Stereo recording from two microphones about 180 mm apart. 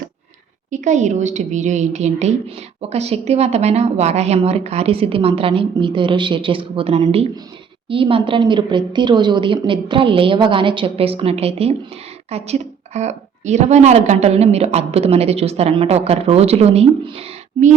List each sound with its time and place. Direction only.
0.7 s a woman's voice: 40° right (ahead or behind)